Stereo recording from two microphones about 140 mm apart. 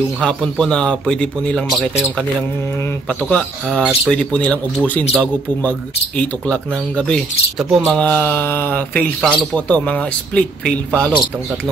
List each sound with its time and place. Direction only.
0.2 s a man's voice: 5° left (ahead or behind)
3.1 s a man's voice: 5° left (ahead or behind)
7.9 s a man's voice: 10° left (ahead or behind)